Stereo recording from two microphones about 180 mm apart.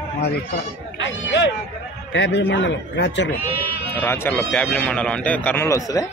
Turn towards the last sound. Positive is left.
turn(degrees=15)  # may be behind; listen again after turning